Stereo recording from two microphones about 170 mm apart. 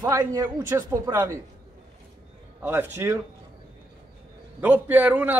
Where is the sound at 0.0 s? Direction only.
20° right (ahead or behind).